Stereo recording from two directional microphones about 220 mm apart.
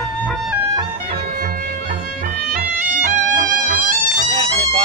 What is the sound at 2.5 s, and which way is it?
Music, 40° right (ahead or behind).